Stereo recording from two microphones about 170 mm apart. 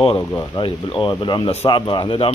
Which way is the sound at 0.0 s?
30° left (ahead or behind).